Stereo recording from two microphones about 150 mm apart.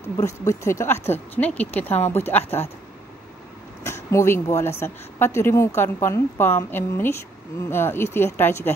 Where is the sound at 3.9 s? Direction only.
15° left (ahead or behind).